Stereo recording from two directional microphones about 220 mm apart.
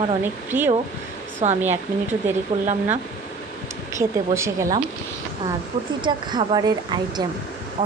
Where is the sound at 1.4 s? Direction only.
30° right (ahead or behind).